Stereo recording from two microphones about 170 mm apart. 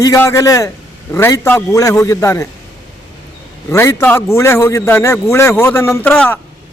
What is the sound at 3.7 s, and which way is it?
A man's voice, 15° left (ahead or behind).